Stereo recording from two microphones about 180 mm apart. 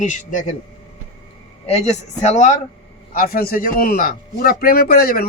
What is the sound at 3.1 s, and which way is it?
A man's voice, 55° left (ahead or behind).